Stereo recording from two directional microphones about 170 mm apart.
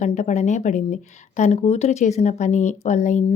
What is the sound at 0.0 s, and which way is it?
Speech, 45° left (ahead or behind).